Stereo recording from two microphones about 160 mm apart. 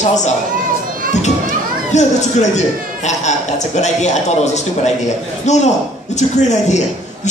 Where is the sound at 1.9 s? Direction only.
45° left (ahead or behind).